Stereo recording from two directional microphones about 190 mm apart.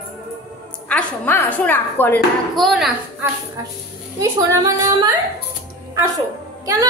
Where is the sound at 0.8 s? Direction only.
10° left (ahead or behind).